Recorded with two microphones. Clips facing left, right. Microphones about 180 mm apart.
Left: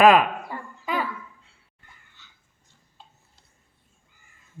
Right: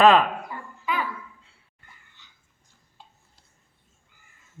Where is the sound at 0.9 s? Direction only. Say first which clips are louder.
Left 1 dB; 45° left (ahead or behind).